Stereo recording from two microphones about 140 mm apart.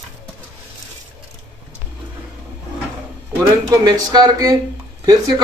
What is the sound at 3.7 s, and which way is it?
Speech, 25° right (ahead or behind).